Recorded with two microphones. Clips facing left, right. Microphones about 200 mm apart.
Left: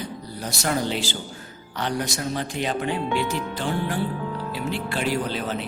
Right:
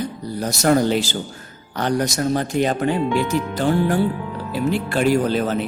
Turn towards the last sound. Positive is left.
turn(degrees=-45)  # may be behind; listen again after turning